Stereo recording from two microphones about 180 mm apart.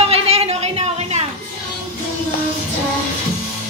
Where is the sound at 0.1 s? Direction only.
35° right (ahead or behind).